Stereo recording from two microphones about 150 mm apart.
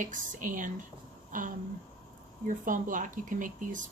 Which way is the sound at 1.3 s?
60° right (ahead or behind).